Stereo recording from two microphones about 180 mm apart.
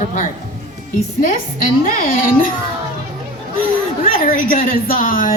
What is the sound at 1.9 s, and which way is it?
Speech, 50° left (ahead or behind).